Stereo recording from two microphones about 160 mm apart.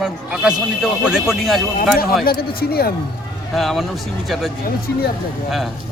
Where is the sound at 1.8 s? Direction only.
65° left (ahead or behind).